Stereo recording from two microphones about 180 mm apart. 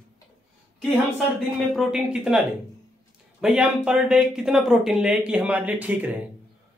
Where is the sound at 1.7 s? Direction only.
Centre (ahead or behind).